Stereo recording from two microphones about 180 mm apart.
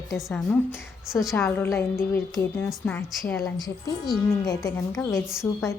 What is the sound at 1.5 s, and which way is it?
A woman's voice, 15° left (ahead or behind).